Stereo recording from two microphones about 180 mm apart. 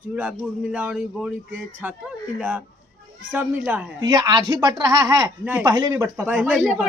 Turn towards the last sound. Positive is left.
turn(degrees=0)  # may be behind; listen again after turning